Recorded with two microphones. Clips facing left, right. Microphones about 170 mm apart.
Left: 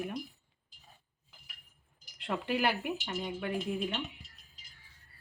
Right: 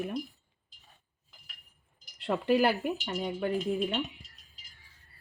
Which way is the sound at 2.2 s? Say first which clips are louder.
Right 6 dB; 35° right (ahead or behind).